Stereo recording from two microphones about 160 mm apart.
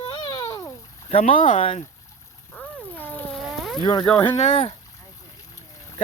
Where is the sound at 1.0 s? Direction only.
40° left (ahead or behind).